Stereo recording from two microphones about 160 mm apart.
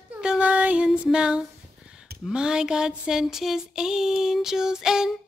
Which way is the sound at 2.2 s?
5° right (ahead or behind).